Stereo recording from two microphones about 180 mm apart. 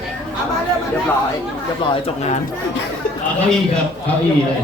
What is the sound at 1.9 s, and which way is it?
Speech, 35° left (ahead or behind).